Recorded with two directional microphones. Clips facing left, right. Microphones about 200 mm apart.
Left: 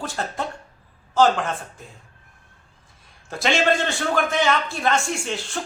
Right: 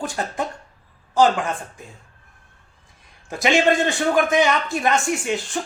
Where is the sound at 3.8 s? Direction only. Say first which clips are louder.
Right 4 dB; 15° right (ahead or behind).